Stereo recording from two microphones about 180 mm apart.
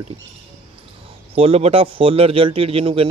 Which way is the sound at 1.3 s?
35° right (ahead or behind).